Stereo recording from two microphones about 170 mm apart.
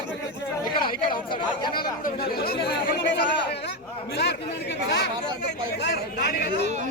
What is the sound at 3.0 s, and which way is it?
Speech, 90° left.